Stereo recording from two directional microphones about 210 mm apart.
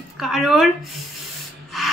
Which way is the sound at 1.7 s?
Centre (ahead or behind).